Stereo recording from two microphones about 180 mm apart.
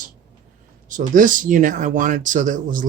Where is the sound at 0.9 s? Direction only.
45° right (ahead or behind).